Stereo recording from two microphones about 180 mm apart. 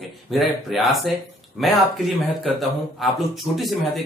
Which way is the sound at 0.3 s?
Centre (ahead or behind).